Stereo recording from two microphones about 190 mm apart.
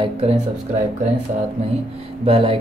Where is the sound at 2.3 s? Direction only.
30° right (ahead or behind).